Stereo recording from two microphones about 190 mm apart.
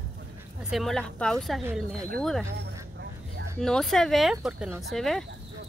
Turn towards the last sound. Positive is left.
turn(degrees=0)  # may be behind; listen again after turning